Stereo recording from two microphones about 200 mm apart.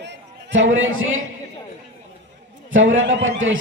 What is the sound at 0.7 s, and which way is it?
Speech, 80° right.